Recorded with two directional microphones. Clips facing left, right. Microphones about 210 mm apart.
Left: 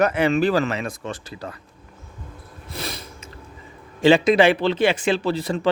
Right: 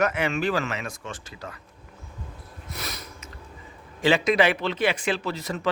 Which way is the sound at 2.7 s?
30° left (ahead or behind).